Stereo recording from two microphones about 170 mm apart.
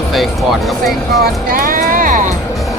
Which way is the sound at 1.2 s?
55° right (ahead or behind).